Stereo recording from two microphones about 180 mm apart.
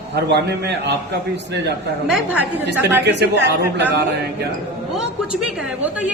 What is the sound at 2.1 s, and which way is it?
Speech, 5° right (ahead or behind).